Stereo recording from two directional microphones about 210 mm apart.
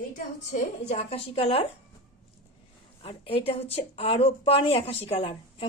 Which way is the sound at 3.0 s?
25° left (ahead or behind).